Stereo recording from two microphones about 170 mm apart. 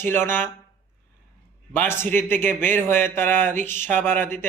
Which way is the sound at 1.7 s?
10° left (ahead or behind).